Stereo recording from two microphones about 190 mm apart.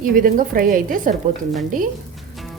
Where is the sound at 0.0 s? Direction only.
45° right (ahead or behind).